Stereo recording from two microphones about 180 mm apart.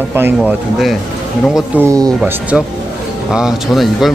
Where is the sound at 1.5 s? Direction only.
15° right (ahead or behind).